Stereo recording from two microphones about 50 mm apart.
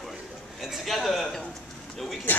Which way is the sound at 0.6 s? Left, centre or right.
Centre.